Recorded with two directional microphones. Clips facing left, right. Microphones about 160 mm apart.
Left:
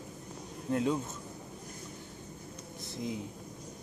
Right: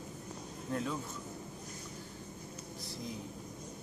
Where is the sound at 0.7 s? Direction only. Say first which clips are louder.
Left 7 dB; 20° left (ahead or behind).